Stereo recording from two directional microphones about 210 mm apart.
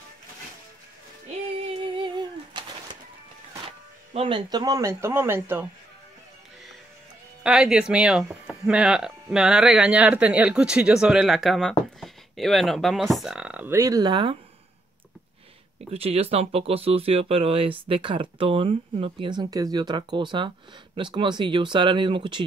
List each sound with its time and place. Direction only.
2.0 s a sound: 20° right (ahead or behind)
3.6 s speech: 25° right (ahead or behind); by 5.7 s 10° right (ahead or behind)
7.4 s speech: 5° right (ahead or behind); by 14.4 s 25° right (ahead or behind)
15.9 s speech: 30° right (ahead or behind)